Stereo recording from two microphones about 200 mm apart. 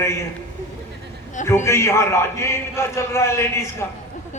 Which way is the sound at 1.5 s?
15° left (ahead or behind).